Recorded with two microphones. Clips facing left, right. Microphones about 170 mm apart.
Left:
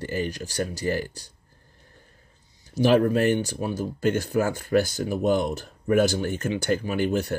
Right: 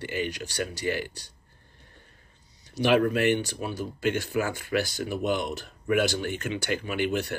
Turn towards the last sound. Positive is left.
turn(degrees=40)  # may be behind; listen again after turning